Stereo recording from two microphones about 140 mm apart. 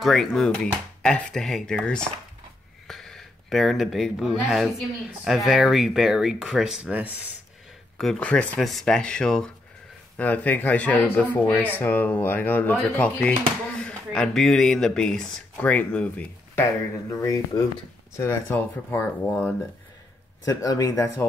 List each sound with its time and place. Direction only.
0.0 s speech: centre (ahead or behind)
8.0 s speech: 5° left (ahead or behind)
17.1 s speech: 25° left (ahead or behind)
20.4 s speech: 25° left (ahead or behind)